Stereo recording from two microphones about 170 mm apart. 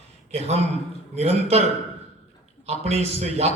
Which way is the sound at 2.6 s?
40° right (ahead or behind).